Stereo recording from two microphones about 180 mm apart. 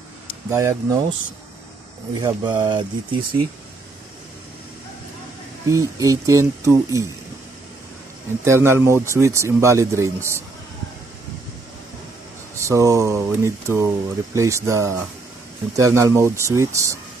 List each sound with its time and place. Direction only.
0.5 s speech: 15° right (ahead or behind)
2.1 s speech: 20° right (ahead or behind)
5.7 s speech: 20° right (ahead or behind)
8.5 s speech: 15° right (ahead or behind)
12.5 s speech: 15° right (ahead or behind)